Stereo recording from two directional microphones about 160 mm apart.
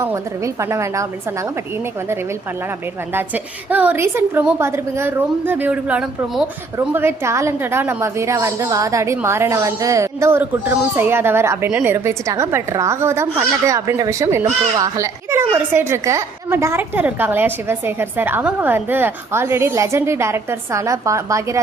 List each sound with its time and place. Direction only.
0.0 s speech: 15° right (ahead or behind)
3.1 s speech: 10° right (ahead or behind)